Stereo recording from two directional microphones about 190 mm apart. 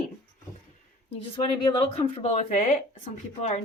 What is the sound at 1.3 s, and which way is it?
Speech, 25° left (ahead or behind).